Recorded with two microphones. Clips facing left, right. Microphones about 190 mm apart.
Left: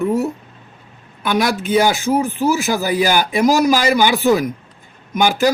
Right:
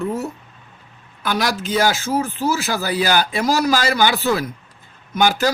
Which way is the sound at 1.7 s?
15° left (ahead or behind).